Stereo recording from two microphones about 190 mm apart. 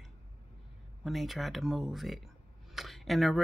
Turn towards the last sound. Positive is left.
turn(degrees=0)  # may be behind; listen again after turning